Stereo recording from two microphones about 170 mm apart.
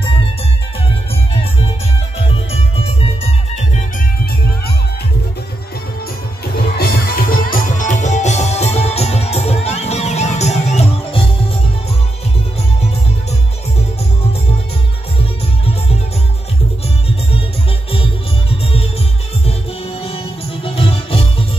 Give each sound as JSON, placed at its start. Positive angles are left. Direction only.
{"t": 2.1, "sound": "music", "side_deg": 35}
{"t": 6.8, "sound": "music", "side_deg": 60}
{"t": 20.6, "sound": "music", "side_deg": 35}